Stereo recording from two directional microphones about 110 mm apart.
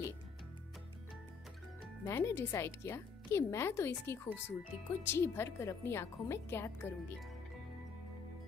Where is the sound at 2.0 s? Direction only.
25° left (ahead or behind).